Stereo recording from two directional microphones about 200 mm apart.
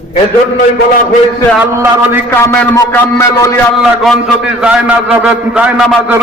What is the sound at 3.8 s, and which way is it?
A man's voice, centre (ahead or behind).